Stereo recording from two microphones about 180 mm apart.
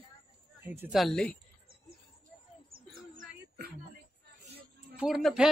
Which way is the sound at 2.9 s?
55° right (ahead or behind).